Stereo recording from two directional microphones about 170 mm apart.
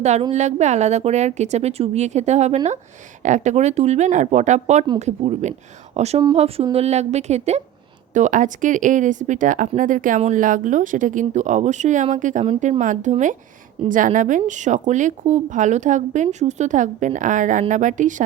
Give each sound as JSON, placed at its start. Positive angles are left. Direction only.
{"t": 0.0, "sound": "a woman's voice", "side_deg": -40}